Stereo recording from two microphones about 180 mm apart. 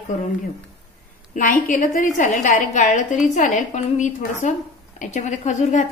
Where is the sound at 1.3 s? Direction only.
45° left (ahead or behind).